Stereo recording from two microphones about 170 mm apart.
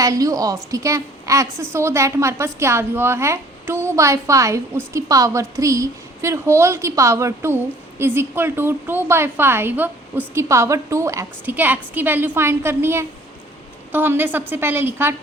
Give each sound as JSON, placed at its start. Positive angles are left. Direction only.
{"t": 0.0, "sound": "a woman's voice", "side_deg": -20}